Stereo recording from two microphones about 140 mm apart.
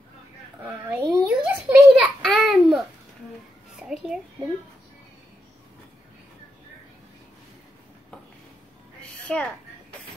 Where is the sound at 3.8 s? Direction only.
5° right (ahead or behind).